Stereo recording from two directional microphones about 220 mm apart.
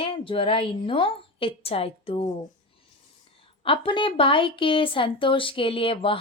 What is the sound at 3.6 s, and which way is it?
Speech, 25° left (ahead or behind).